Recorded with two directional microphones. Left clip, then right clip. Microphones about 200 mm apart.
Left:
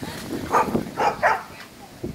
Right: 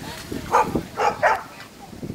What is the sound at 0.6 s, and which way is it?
Dog, 60° right (ahead or behind).